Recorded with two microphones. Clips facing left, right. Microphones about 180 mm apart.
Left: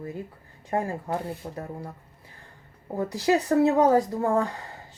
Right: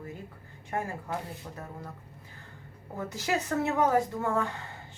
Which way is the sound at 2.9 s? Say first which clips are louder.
Left 8 dB; 35° left (ahead or behind).